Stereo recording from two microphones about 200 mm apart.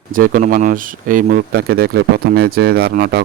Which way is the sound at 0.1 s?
45° right (ahead or behind).